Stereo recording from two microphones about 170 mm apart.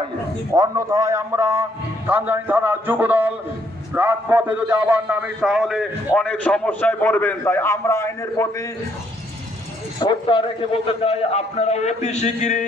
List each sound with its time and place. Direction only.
0.5 s a man's voice: 20° right (ahead or behind); by 8.6 s 15° left (ahead or behind)
9.9 s a man's voice: 25° left (ahead or behind); by 12.6 s 45° left (ahead or behind)